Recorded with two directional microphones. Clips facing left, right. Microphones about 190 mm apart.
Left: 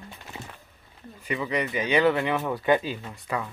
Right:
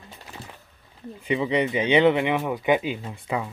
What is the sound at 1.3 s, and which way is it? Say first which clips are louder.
Speech: right 5 dB; 25° right (ahead or behind).